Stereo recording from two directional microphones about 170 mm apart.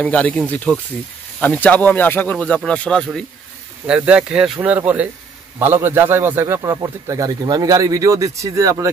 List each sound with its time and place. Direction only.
0.0 s speech: 10° left (ahead or behind)
3.8 s a man's voice: 5° right (ahead or behind)